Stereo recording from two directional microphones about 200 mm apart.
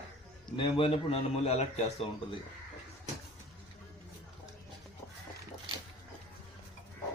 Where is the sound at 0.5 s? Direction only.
25° left (ahead or behind).